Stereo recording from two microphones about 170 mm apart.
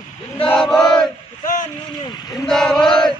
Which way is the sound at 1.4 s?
50° left (ahead or behind).